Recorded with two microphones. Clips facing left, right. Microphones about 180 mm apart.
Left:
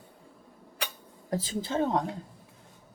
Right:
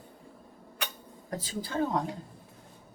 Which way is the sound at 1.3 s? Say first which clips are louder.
Left 4 dB; 25° left (ahead or behind).